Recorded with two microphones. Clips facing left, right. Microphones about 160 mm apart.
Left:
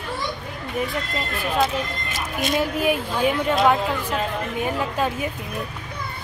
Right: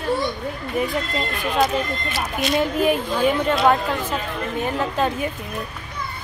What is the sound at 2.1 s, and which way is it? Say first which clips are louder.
Speech: right 1 dB; 50° left (ahead or behind).